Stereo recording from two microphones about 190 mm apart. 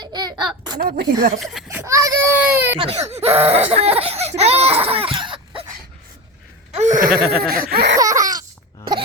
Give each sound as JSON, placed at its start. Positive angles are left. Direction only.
{"t": 0.0, "sound": "a sound", "side_deg": -20}
{"t": 0.8, "sound": "a woman's voice", "side_deg": -50}
{"t": 1.6, "sound": "baby cry", "side_deg": -15}
{"t": 2.7, "sound": "speech", "side_deg": -30}
{"t": 3.7, "sound": "baby cry", "side_deg": -30}
{"t": 6.7, "sound": "a sound", "side_deg": -35}
{"t": 7.4, "sound": "a woman's voice", "side_deg": -50}
{"t": 7.9, "sound": "laughter", "side_deg": -15}